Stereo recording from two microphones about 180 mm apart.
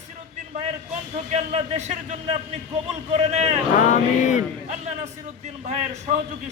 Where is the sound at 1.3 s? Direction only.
40° right (ahead or behind).